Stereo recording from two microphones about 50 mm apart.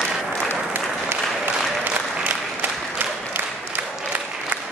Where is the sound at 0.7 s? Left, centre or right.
Right.